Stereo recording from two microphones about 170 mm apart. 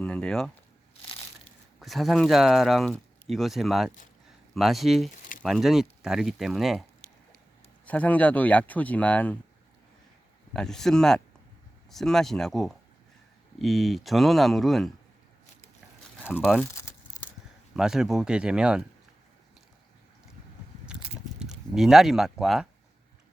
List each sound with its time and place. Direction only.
0.0 s speech: 5° left (ahead or behind)
1.8 s speech: centre (ahead or behind)
7.9 s speech: 10° left (ahead or behind)
10.5 s speech: 5° left (ahead or behind)
16.2 s speech: 10° left (ahead or behind)
16.7 s crumpling: 15° left (ahead or behind)
17.7 s speech: 5° right (ahead or behind)
21.3 s speech: 5° right (ahead or behind)